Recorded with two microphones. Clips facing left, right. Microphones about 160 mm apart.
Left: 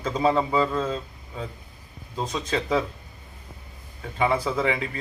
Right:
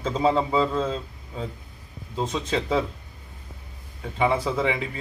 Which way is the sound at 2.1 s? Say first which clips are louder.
Right 2 dB; 10° left (ahead or behind).